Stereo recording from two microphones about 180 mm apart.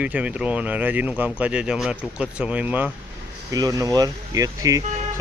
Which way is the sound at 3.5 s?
20° right (ahead or behind).